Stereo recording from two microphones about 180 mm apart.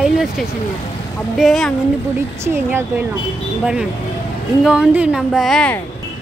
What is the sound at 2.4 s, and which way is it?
Speech, 15° right (ahead or behind).